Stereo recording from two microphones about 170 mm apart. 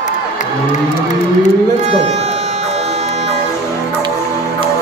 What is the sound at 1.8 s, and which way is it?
Music, 40° right (ahead or behind).